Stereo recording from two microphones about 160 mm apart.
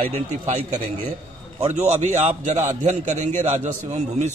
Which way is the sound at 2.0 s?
45° right (ahead or behind).